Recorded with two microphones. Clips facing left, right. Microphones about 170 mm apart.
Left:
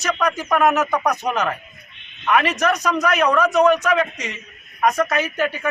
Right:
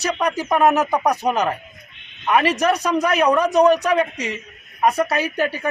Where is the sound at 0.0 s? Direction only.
30° right (ahead or behind).